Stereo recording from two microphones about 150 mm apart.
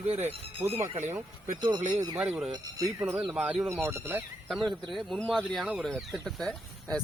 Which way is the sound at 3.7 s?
15° right (ahead or behind).